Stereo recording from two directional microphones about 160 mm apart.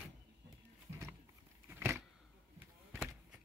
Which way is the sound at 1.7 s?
15° right (ahead or behind).